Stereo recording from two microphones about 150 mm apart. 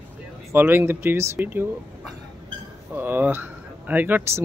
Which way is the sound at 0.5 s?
15° right (ahead or behind).